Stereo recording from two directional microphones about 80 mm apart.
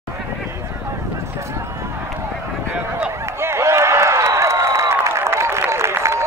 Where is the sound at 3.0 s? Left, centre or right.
Right.